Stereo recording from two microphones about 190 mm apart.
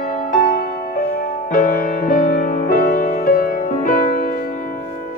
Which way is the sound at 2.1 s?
45° left (ahead or behind).